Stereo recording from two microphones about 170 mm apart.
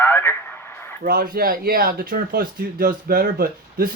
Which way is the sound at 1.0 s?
55° right (ahead or behind).